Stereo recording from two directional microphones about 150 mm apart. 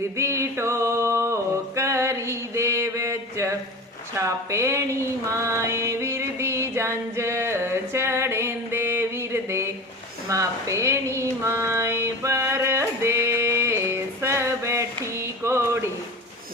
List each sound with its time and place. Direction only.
0.2 s music: 20° right (ahead or behind)
4.2 s speech: 20° right (ahead or behind)
5.4 s music: 20° right (ahead or behind)
10.2 s a sound: 20° right (ahead or behind)